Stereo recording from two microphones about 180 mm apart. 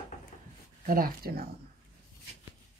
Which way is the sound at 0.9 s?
55° right (ahead or behind).